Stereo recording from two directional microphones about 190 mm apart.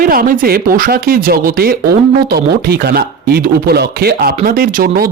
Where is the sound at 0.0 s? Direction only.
50° right (ahead or behind).